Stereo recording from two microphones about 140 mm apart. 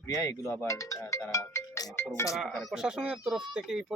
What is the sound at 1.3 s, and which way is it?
Music, 20° left (ahead or behind).